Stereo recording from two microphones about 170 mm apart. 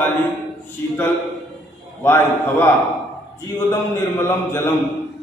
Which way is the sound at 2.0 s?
15° left (ahead or behind).